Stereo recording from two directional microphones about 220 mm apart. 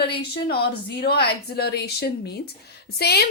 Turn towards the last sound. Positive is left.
turn(degrees=45)  # may be behind; listen again after turning